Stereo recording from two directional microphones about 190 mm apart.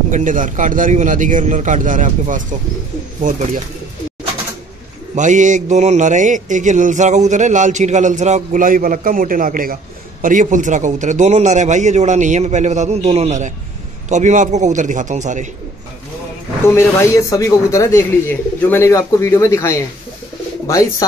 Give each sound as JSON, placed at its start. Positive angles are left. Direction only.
{"t": 0.1, "sound": "a man's voice", "side_deg": -45}
{"t": 5.1, "sound": "speech", "side_deg": -40}
{"t": 16.6, "sound": "speech", "side_deg": 15}